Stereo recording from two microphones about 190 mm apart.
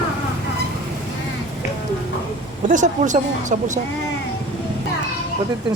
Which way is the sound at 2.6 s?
40° right (ahead or behind).